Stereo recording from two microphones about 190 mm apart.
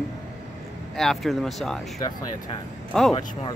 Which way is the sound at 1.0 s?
Centre (ahead or behind).